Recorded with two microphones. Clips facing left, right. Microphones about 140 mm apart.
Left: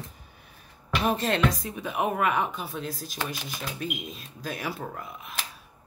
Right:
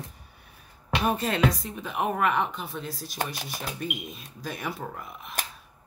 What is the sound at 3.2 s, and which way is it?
Speech, 45° right (ahead or behind).